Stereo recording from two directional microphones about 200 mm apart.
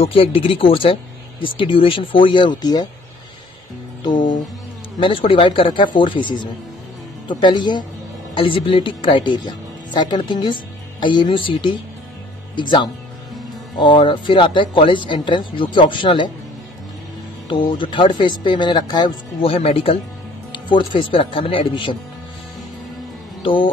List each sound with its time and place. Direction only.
0.0 s speech: 30° left (ahead or behind)
5.0 s speech: 25° left (ahead or behind)
17.7 s speech: 25° left (ahead or behind)